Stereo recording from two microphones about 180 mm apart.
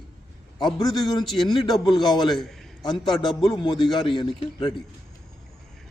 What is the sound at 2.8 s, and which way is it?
Speech, 25° left (ahead or behind).